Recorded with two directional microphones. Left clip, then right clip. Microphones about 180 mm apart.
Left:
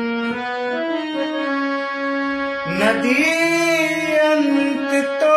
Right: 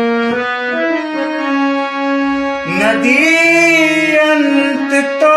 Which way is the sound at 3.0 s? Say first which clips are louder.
Right 7 dB; 10° left (ahead or behind).